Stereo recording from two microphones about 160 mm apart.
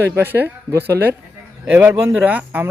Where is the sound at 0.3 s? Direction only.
15° right (ahead or behind).